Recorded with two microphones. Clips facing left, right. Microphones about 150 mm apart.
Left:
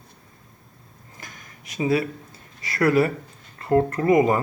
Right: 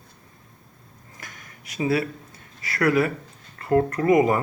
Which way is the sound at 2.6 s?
25° left (ahead or behind).